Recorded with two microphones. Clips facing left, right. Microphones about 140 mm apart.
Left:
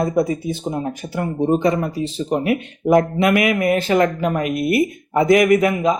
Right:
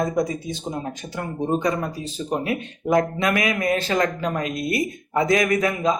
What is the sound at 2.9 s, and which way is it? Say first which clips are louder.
Speech: left 5 dB; 25° left (ahead or behind).